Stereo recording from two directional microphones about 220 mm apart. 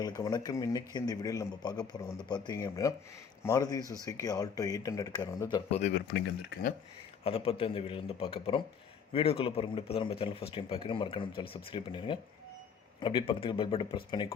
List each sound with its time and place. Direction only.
0.0 s speech: 20° left (ahead or behind)
5.8 s speech: 45° left (ahead or behind)
7.3 s speech: 25° left (ahead or behind)